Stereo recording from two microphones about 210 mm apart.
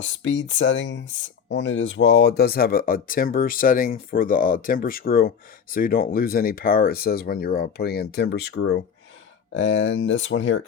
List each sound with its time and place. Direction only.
0.0 s speech: 60° left (ahead or behind)